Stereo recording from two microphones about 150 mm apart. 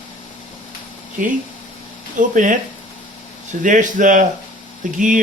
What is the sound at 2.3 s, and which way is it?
Speech, 60° right (ahead or behind).